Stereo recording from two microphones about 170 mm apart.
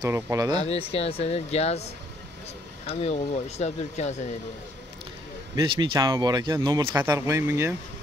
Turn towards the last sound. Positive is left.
turn(degrees=-15)  # may be behind; listen again after turning